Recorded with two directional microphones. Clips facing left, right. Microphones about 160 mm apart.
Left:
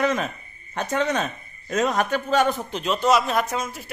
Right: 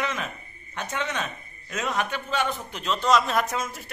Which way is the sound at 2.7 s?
15° left (ahead or behind).